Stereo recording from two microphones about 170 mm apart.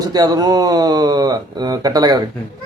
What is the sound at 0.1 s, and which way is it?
Speech, 25° right (ahead or behind).